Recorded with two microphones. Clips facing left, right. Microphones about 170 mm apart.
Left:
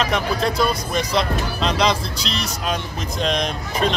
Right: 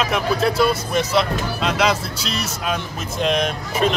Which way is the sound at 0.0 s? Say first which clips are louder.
Right 1 dB; 5° right (ahead or behind).